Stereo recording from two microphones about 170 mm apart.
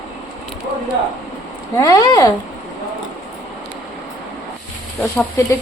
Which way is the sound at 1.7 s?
20° left (ahead or behind).